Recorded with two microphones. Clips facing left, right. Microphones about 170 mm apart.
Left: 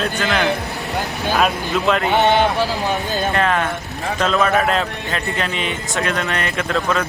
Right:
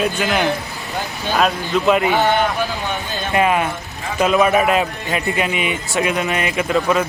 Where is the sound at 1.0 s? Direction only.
65° left (ahead or behind).